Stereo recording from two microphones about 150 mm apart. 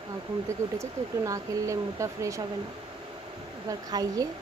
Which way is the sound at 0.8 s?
20° right (ahead or behind).